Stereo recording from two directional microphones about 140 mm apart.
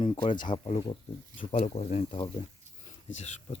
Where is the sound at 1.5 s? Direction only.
55° left (ahead or behind).